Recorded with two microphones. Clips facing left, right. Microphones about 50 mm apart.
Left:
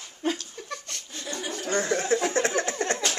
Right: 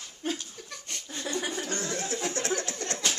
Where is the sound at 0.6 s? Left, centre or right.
Left.